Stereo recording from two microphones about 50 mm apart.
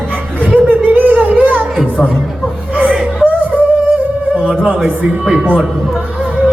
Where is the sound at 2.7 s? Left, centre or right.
Right.